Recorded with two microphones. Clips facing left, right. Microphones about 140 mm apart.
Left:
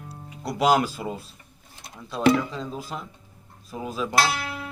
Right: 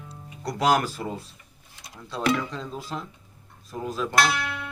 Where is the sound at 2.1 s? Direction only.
20° left (ahead or behind).